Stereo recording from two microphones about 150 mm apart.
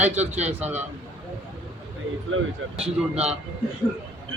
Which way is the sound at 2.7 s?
5° right (ahead or behind).